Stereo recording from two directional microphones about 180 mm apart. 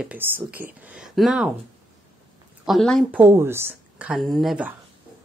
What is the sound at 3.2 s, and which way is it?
Speech, 15° right (ahead or behind).